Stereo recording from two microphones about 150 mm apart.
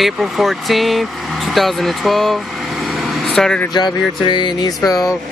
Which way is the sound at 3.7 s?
30° left (ahead or behind).